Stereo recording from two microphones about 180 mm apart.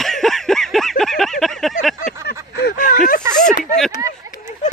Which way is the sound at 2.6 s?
60° left (ahead or behind).